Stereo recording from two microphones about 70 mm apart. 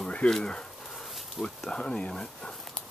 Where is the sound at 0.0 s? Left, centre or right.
Centre.